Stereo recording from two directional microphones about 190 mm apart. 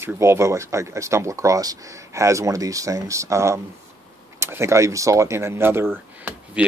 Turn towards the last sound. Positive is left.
turn(degrees=-10)  # may be behind; listen again after turning